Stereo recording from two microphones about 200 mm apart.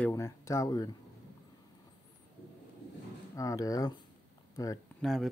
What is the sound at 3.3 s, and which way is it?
Speech, 15° left (ahead or behind).